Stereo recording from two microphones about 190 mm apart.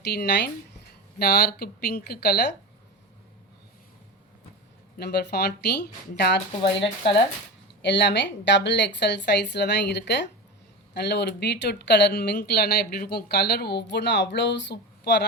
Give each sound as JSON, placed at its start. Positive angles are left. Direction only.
{"t": 0.0, "sound": "speech", "side_deg": 60}
{"t": 4.9, "sound": "speech", "side_deg": 60}
{"t": 7.8, "sound": "speech", "side_deg": 65}